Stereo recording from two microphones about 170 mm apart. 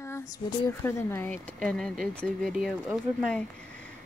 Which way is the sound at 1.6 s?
Centre (ahead or behind).